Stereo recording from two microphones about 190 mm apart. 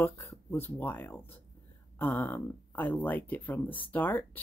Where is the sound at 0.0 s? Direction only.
15° left (ahead or behind).